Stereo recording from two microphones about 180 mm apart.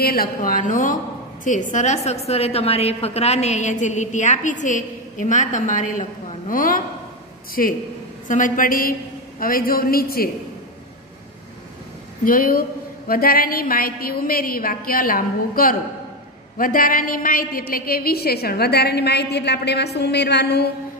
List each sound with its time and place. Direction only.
0.0 s a woman's voice: 55° left (ahead or behind)
12.3 s a woman's voice: 50° left (ahead or behind)